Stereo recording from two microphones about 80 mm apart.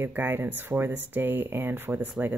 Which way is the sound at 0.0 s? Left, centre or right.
Right.